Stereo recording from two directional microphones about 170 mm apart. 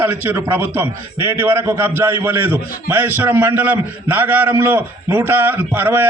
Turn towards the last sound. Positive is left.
turn(degrees=-10)  # may be behind; listen again after turning